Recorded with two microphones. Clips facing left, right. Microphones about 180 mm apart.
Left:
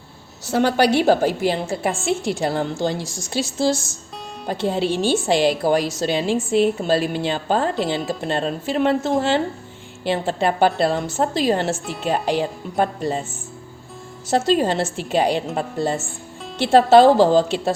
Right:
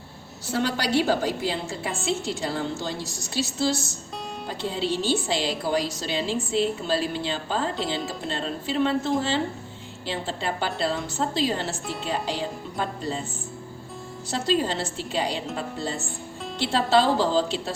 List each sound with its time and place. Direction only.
0.5 s a woman's voice: 60° left (ahead or behind)
3.0 s a woman's voice: 90° left
4.4 s a woman's voice: 50° left (ahead or behind)
6.3 s a woman's voice: 65° left (ahead or behind)
14.3 s a woman's voice: 50° left (ahead or behind)